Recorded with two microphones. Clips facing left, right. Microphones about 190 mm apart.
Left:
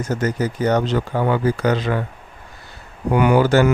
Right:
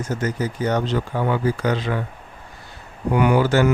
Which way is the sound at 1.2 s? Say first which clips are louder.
Left 3 dB; 60° left (ahead or behind).